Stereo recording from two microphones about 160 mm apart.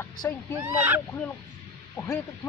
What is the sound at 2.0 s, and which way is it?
Speech, 20° left (ahead or behind).